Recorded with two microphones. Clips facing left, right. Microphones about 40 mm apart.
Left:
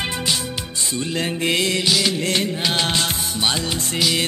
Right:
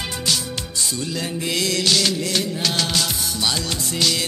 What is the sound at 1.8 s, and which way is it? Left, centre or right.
Music of bollywood, centre.